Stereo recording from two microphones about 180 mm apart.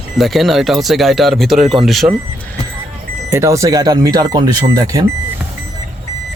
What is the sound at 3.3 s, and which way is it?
Speech, 15° right (ahead or behind).